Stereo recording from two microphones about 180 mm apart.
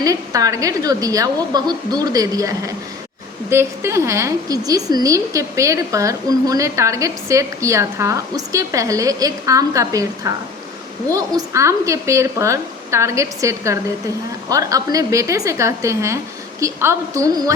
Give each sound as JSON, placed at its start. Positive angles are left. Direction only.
{"t": 0.0, "sound": "a woman's voice", "side_deg": -20}